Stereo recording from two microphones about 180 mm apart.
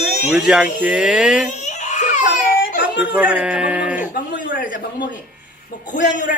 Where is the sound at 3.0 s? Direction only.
5° right (ahead or behind).